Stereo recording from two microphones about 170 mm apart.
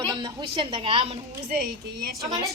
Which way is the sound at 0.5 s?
30° right (ahead or behind).